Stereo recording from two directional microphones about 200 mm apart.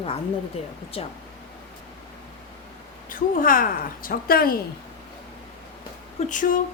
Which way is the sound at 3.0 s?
45° left (ahead or behind).